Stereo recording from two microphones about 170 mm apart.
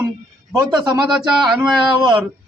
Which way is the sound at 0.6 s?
25° right (ahead or behind).